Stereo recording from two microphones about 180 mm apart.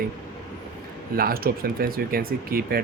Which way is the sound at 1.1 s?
55° right (ahead or behind).